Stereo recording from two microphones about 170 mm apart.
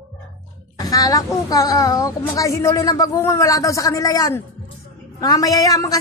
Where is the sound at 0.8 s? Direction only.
20° left (ahead or behind).